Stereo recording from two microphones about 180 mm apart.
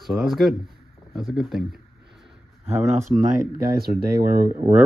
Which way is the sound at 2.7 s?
15° right (ahead or behind).